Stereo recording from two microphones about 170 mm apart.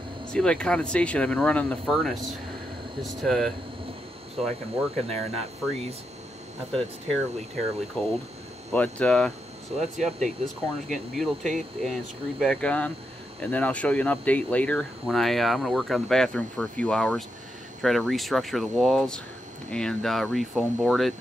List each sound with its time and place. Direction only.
0.3 s speech: 5° left (ahead or behind)
3.0 s speech: centre (ahead or behind)
4.9 s speech: 35° right (ahead or behind)
6.7 s speech: 5° left (ahead or behind)